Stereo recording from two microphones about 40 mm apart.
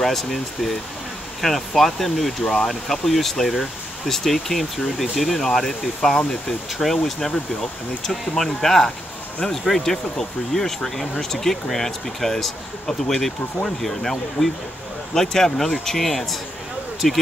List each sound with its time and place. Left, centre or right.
0.0 s speech: centre
2.7 s speech: centre
7.1 s speech: centre
12.8 s speech: centre
13.7 s speech: centre